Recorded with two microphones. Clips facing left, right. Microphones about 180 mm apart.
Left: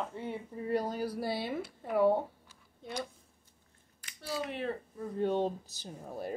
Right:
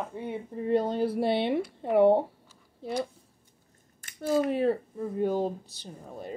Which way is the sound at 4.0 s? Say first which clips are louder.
Right 11 dB; 50° right (ahead or behind).